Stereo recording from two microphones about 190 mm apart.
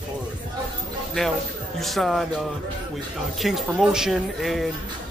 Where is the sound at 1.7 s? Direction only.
Centre (ahead or behind).